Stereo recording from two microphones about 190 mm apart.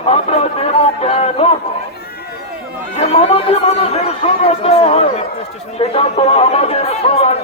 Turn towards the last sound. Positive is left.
turn(degrees=35)  # may be behind; listen again after turning